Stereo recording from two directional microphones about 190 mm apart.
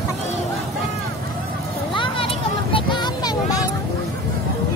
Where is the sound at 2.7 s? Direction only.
25° left (ahead or behind).